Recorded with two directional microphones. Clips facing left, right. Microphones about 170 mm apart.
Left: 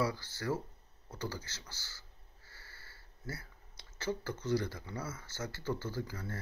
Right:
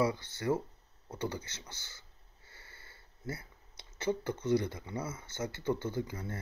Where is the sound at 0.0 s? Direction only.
20° right (ahead or behind).